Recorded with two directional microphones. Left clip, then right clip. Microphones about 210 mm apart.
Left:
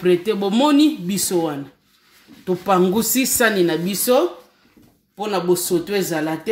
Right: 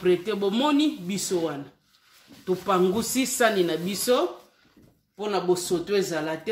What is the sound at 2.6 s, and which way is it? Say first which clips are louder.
Speech: left 6 dB; 45° left (ahead or behind).